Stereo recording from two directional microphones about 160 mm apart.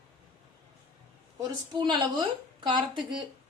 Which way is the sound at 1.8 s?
30° right (ahead or behind).